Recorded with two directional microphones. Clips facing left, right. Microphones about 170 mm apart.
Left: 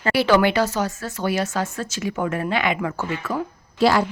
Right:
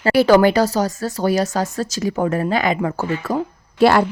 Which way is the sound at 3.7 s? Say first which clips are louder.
Right 4 dB; 60° right (ahead or behind).